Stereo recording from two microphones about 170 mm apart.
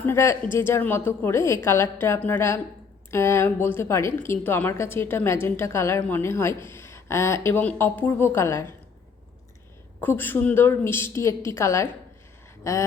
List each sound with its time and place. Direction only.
0.0 s a woman's voice: 15° left (ahead or behind)
10.0 s a woman's voice: 10° left (ahead or behind)
12.7 s a sound: 20° left (ahead or behind)